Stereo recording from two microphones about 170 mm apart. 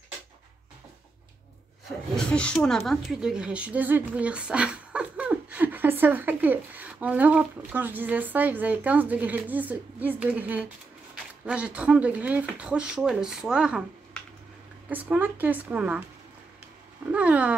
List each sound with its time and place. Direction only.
1.9 s speech: 5° left (ahead or behind)
14.9 s speech: 10° right (ahead or behind)
17.1 s speech: 10° right (ahead or behind)